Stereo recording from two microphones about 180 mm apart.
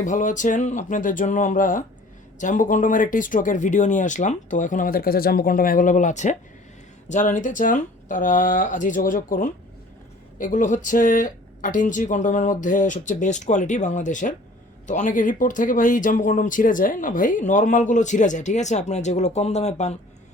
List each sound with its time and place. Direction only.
0.0 s speech: 45° left (ahead or behind)